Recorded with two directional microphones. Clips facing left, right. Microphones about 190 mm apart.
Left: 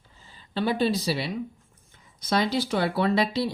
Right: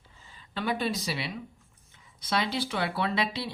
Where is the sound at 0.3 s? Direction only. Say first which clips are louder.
Left 5 dB; 30° left (ahead or behind).